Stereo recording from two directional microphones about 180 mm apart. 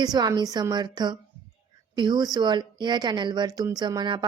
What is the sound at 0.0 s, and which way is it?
A woman's voice, 20° right (ahead or behind).